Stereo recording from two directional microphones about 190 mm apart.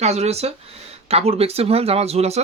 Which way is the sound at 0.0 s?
35° right (ahead or behind).